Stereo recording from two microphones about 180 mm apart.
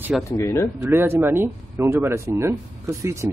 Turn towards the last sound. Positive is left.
turn(degrees=-15)  # may be behind; listen again after turning